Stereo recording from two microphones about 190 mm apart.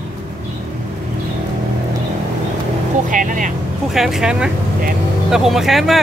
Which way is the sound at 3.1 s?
45° right (ahead or behind).